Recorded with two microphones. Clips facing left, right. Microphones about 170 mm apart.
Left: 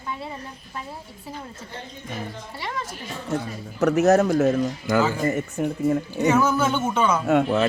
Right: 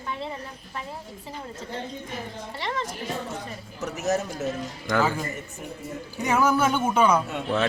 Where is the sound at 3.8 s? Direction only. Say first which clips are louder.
Left 10 dB; 65° left (ahead or behind).